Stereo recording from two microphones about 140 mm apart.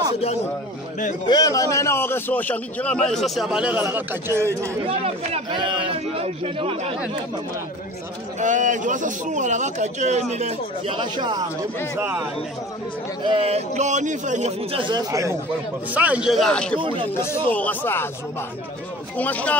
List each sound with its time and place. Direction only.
1.2 s a man's voice: 25° left (ahead or behind); by 4.6 s 20° right (ahead or behind)
4.8 s a man's voice: 45° right (ahead or behind)
8.4 s a man's voice: 60° right (ahead or behind)
10.9 s speech: 35° right (ahead or behind)
12.0 s a man's voice: 15° right (ahead or behind)
13.2 s speech: 35° right (ahead or behind)
13.5 s a man's voice: 50° right (ahead or behind)
14.7 s speech: 35° right (ahead or behind)
15.9 s a man's voice: 10° right (ahead or behind); by 16.8 s 5° left (ahead or behind)
16.8 s speech: 35° right (ahead or behind)
17.1 s a man's voice: 20° left (ahead or behind)
19.1 s a man's voice: 10° left (ahead or behind)